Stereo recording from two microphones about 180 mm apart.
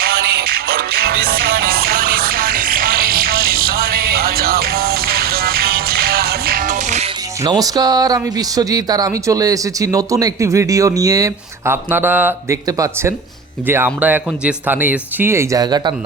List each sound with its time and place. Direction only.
0.0 s music: 60° right (ahead or behind); by 7.1 s 40° right (ahead or behind)
7.4 s speech: 20° right (ahead or behind)